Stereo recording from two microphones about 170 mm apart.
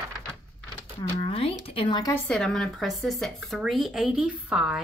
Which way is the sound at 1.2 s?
35° left (ahead or behind).